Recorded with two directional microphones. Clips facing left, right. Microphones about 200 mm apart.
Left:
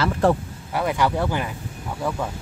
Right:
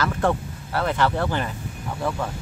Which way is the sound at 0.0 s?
35° left (ahead or behind).